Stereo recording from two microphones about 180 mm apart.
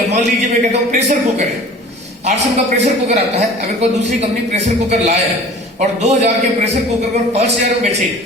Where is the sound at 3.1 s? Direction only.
40° right (ahead or behind).